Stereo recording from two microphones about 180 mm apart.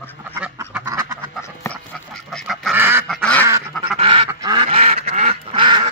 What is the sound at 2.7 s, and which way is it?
Goose, 10° right (ahead or behind).